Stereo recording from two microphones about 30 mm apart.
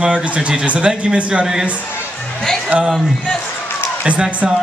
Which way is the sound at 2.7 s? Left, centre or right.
Right.